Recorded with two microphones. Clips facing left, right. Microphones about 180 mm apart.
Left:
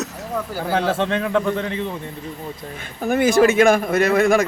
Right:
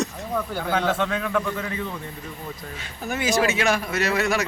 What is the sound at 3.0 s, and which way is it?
Speech, 55° left (ahead or behind).